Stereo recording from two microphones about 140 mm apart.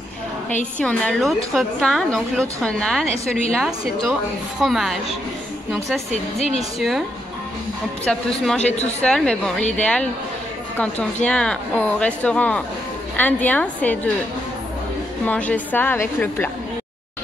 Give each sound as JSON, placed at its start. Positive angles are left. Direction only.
{"t": 0.7, "sound": "a woman's voice", "side_deg": 5}
{"t": 6.3, "sound": "speech", "side_deg": 50}
{"t": 6.8, "sound": "a woman's voice", "side_deg": 0}
{"t": 8.6, "sound": "speech", "side_deg": 55}
{"t": 9.0, "sound": "a woman's voice", "side_deg": 5}
{"t": 11.2, "sound": "speech", "side_deg": 5}
{"t": 15.2, "sound": "speech", "side_deg": 10}